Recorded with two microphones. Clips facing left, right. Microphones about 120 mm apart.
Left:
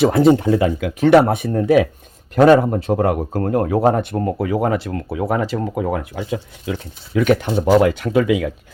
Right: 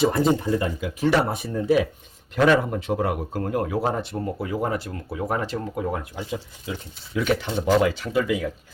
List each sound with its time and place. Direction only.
0.0 s speech: 70° left (ahead or behind)
2.3 s speech: 40° left (ahead or behind)
4.4 s speech: 75° left (ahead or behind)